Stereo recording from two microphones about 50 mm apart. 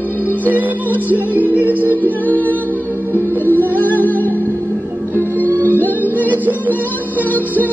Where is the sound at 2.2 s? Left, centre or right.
Left.